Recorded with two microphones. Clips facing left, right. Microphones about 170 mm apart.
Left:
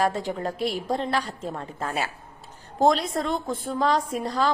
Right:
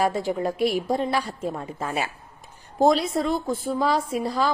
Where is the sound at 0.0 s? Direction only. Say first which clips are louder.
Right 2 dB; 10° right (ahead or behind).